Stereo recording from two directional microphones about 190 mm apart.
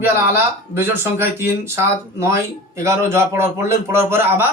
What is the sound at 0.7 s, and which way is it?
Speech, 10° right (ahead or behind).